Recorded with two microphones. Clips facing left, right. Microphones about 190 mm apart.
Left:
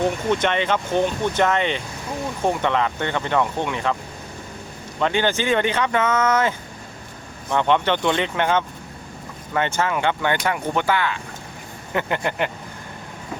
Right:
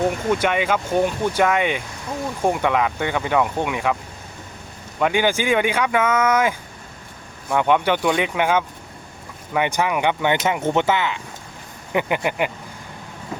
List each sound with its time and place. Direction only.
0.0 s speech: 5° right (ahead or behind)
4.9 s speech: 10° right (ahead or behind)
7.5 s speech: 10° right (ahead or behind)